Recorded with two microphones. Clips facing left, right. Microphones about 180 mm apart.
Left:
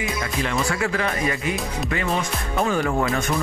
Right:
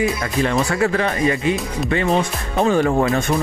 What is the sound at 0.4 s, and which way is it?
Speech, 40° right (ahead or behind).